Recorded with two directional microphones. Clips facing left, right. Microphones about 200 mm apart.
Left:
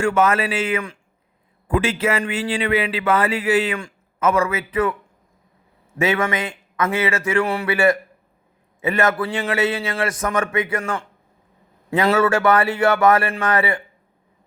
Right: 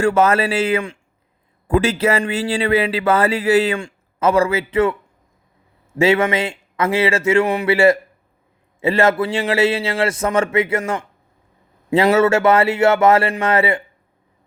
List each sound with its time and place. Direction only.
0.0 s speech: 40° right (ahead or behind)
6.0 s a man's voice: 30° right (ahead or behind)